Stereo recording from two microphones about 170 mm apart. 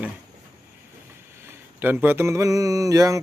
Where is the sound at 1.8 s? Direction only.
10° right (ahead or behind).